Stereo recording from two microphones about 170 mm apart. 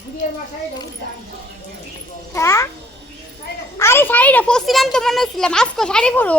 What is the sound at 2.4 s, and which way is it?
Speech, 15° left (ahead or behind).